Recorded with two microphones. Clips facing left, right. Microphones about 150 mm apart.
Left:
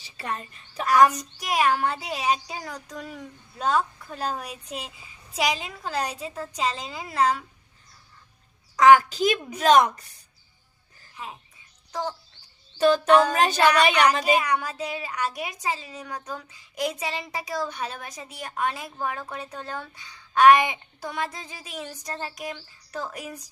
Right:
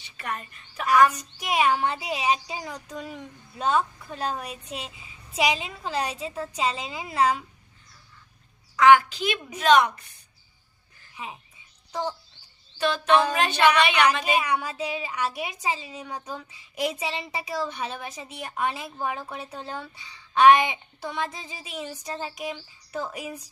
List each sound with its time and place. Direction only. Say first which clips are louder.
0.0 s speech: left 1 dB; 30° left (ahead or behind)
1.4 s a woman's voice: even; 5° right (ahead or behind)
8.7 s speech: left 1 dB; 40° left (ahead or behind)
11.1 s a sound: even; 5° right (ahead or behind)
11.9 s speech: right 1 dB; 5° right (ahead or behind)
13.3 s speech: left 1 dB; 40° left (ahead or behind)
14.3 s a woman's voice: left 1 dB; 5° right (ahead or behind)